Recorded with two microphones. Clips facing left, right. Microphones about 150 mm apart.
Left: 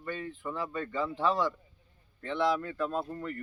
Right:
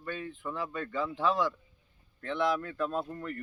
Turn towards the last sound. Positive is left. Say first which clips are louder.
# even
turn(degrees=0)  # may be behind; listen again after turning